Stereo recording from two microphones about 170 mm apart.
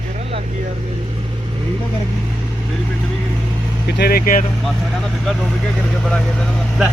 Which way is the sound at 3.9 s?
65° left (ahead or behind).